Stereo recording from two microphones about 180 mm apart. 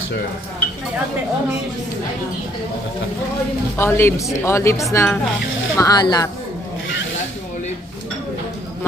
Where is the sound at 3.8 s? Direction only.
15° left (ahead or behind).